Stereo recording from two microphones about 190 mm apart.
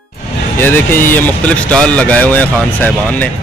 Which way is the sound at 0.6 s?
10° left (ahead or behind).